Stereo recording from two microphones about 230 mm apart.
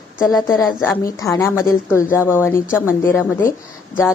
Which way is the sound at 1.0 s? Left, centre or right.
Centre.